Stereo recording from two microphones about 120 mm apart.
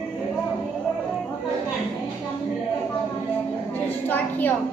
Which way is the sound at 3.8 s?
15° left (ahead or behind).